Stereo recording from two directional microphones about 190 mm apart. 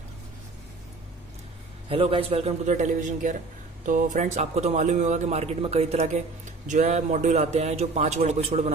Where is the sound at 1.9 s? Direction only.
30° right (ahead or behind).